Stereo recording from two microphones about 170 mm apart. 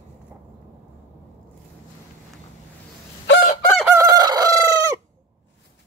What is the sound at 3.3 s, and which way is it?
Fowl, 60° left (ahead or behind).